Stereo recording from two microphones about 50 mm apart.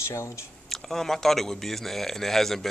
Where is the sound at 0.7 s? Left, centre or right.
Centre.